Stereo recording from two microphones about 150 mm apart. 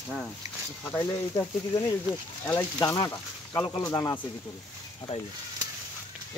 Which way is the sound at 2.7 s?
25° left (ahead or behind).